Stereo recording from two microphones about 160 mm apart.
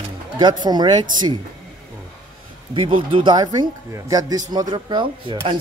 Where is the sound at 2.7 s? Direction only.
30° right (ahead or behind).